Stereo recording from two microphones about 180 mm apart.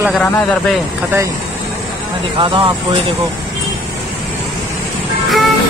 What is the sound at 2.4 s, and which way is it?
Speech, 30° right (ahead or behind).